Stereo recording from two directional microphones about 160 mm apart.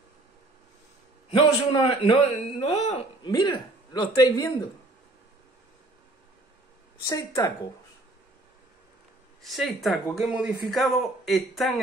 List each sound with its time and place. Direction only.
1.3 s a man's voice: 30° left (ahead or behind)
3.3 s a man's voice: 25° left (ahead or behind)
7.1 s a man's voice: 20° left (ahead or behind)
9.4 s a man's voice: centre (ahead or behind)